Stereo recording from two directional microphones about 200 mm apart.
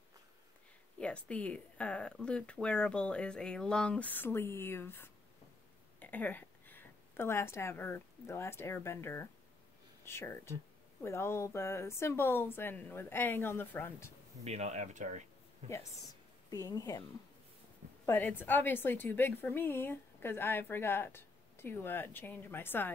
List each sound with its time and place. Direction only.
0.9 s a woman's voice: 5° left (ahead or behind)
14.4 s speech: 35° right (ahead or behind)
16.4 s a woman's voice: 20° left (ahead or behind)
18.0 s a woman's voice: 10° left (ahead or behind)